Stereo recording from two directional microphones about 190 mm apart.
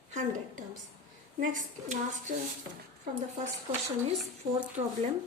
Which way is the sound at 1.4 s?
45° right (ahead or behind).